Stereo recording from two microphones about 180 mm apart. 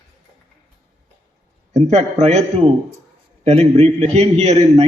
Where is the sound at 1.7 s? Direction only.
40° right (ahead or behind).